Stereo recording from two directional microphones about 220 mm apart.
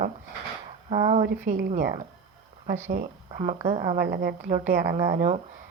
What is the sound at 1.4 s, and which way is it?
Speech, 35° right (ahead or behind).